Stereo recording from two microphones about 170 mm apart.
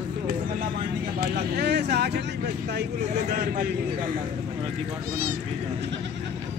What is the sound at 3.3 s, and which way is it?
Speech, 65° right (ahead or behind).